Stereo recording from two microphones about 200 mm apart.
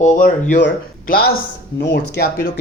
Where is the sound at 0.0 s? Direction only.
40° left (ahead or behind).